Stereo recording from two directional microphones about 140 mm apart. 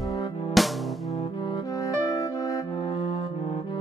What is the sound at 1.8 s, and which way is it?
Music, 25° left (ahead or behind).